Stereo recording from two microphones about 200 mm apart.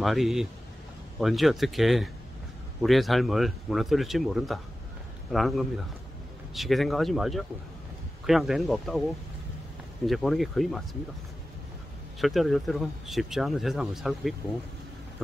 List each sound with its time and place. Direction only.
0.0 s speech: centre (ahead or behind)
10.0 s speech: centre (ahead or behind)
12.2 s speech: centre (ahead or behind)